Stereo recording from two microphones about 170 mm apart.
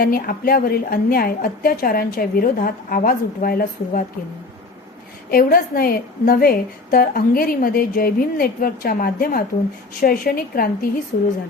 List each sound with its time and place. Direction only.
0.0 s a woman's voice: 60° left (ahead or behind)
5.3 s a woman's voice: 60° left (ahead or behind)